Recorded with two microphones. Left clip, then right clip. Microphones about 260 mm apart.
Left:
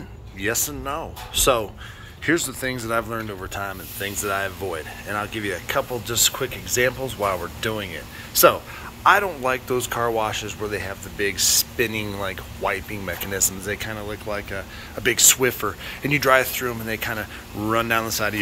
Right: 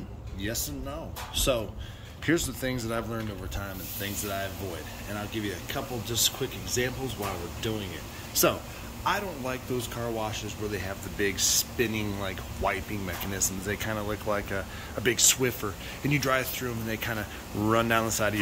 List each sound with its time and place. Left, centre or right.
0.4 s speech: centre
2.2 s speech: centre